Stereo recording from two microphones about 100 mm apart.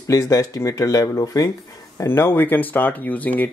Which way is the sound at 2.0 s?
25° left (ahead or behind).